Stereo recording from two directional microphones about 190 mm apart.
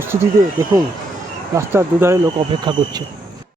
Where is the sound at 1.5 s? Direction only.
15° right (ahead or behind).